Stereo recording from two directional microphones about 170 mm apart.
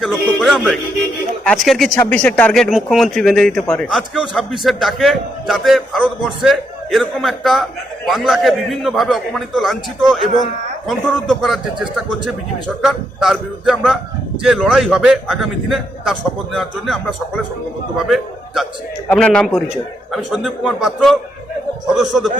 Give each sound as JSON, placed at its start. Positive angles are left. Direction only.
{"t": 0.0, "sound": "a man's voice", "side_deg": 0}
{"t": 19.1, "sound": "a man's voice", "side_deg": 5}